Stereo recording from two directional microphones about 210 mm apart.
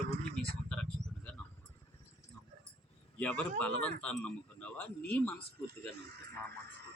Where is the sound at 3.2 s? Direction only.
5° left (ahead or behind).